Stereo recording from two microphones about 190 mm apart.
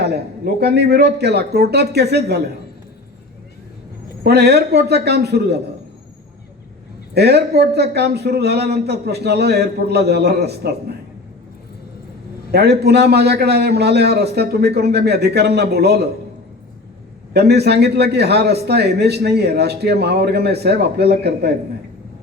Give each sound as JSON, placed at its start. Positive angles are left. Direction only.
{"t": 0.0, "sound": "a man's voice", "side_deg": -60}
{"t": 4.2, "sound": "a man's voice", "side_deg": -60}
{"t": 7.1, "sound": "a man's voice", "side_deg": -60}
{"t": 12.5, "sound": "a man's voice", "side_deg": -60}
{"t": 17.3, "sound": "a man's voice", "side_deg": -60}